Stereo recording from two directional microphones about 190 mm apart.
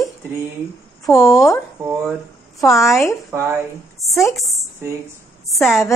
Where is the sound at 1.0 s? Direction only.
15° left (ahead or behind).